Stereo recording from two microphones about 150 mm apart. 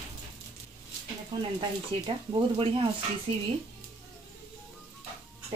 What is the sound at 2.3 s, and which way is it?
Speech, 35° right (ahead or behind).